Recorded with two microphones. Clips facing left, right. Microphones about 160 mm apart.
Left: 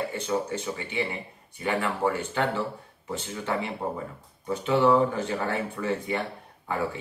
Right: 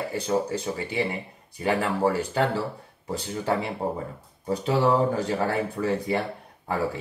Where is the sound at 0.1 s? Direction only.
35° right (ahead or behind).